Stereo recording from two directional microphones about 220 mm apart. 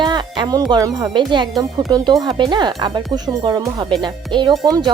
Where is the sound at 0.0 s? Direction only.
20° right (ahead or behind).